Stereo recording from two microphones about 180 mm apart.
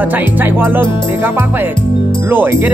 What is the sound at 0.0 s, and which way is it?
Speech, 10° right (ahead or behind).